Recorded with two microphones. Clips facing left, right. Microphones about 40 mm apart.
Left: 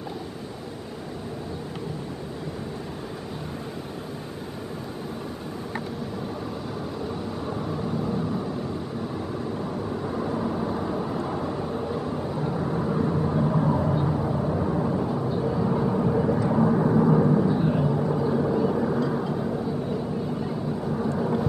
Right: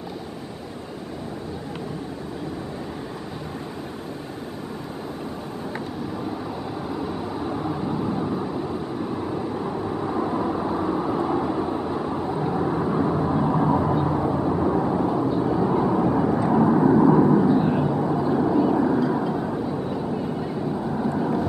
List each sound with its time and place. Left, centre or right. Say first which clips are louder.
6.9 s vehicle: right 3 dB; centre